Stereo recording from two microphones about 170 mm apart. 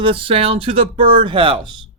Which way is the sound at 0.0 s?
30° right (ahead or behind).